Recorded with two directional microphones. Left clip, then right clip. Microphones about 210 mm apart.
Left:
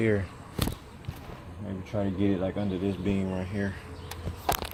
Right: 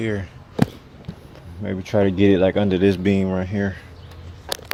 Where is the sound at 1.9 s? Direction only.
55° right (ahead or behind).